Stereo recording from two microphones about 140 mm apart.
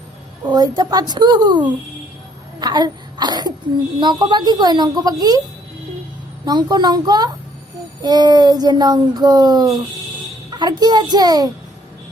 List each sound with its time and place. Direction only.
0.4 s a woman's voice: 25° right (ahead or behind)
6.4 s speech: 30° right (ahead or behind)